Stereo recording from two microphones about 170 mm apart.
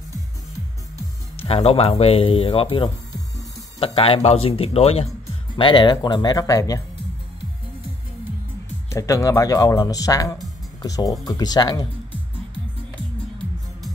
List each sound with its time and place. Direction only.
0.9 s speech: 35° left (ahead or behind); by 6.8 s 20° left (ahead or behind)
8.9 s speech: 15° left (ahead or behind)